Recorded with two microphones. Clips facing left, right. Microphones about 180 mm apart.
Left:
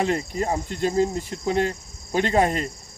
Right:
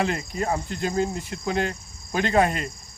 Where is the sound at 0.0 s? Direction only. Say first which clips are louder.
Left 2 dB; 30° left (ahead or behind).